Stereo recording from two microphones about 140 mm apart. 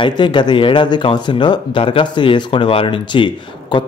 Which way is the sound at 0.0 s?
35° left (ahead or behind).